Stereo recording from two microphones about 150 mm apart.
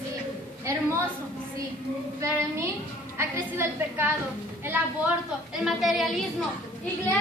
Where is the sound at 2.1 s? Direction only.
20° right (ahead or behind); by 6.0 s centre (ahead or behind).